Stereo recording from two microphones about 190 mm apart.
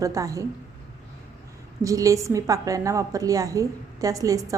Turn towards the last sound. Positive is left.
turn(degrees=-15)  # may be behind; listen again after turning